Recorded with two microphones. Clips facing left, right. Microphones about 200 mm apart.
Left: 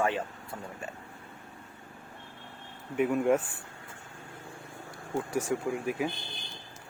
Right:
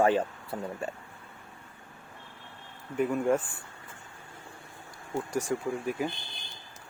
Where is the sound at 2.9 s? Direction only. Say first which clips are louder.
Left 1 dB; 5° left (ahead or behind).